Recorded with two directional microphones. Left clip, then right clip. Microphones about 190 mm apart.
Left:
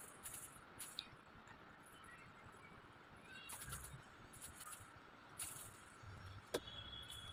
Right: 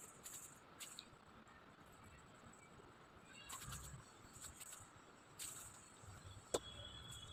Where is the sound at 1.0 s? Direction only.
10° left (ahead or behind).